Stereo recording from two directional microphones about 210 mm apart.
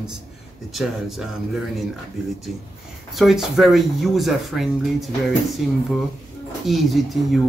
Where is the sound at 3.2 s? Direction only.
Centre (ahead or behind).